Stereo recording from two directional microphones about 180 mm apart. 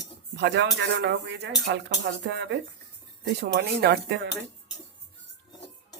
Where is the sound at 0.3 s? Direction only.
75° right (ahead or behind).